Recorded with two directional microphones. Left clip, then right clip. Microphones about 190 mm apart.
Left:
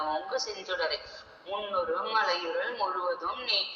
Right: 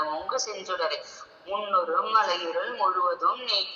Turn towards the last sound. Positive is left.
turn(degrees=-25)  # may be behind; listen again after turning